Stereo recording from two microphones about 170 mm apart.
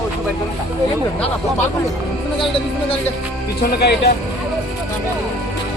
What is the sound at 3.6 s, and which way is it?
Speech, 75° left (ahead or behind).